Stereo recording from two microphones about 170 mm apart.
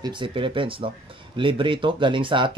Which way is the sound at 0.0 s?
30° right (ahead or behind).